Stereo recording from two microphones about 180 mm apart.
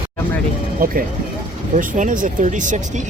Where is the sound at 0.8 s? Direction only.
55° right (ahead or behind).